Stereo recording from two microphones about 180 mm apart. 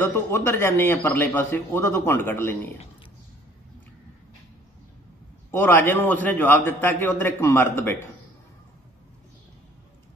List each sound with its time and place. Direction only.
0.0 s a man's voice: 15° left (ahead or behind)
5.5 s a man's voice: 10° left (ahead or behind)